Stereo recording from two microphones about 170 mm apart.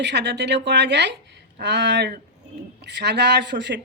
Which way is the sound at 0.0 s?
90° right.